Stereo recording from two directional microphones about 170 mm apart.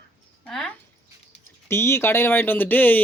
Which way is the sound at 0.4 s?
5° left (ahead or behind).